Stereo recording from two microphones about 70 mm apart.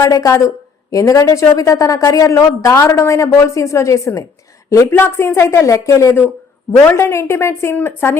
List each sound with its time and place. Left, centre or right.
0.0 s a woman's voice: left
4.7 s speech: left